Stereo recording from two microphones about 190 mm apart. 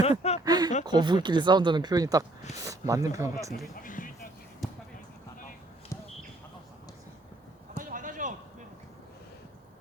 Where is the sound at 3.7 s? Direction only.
45° left (ahead or behind).